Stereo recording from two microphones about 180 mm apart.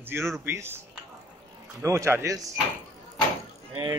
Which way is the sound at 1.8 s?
15° right (ahead or behind).